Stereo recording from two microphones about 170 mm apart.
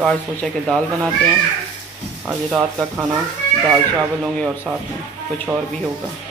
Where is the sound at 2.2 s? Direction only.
Centre (ahead or behind).